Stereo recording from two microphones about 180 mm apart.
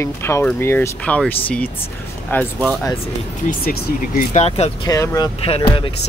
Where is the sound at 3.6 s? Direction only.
55° left (ahead or behind).